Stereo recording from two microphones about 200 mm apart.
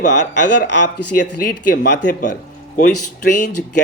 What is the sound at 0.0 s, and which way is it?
Speech, 35° left (ahead or behind).